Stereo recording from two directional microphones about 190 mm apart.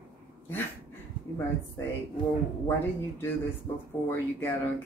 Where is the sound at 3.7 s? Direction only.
15° left (ahead or behind).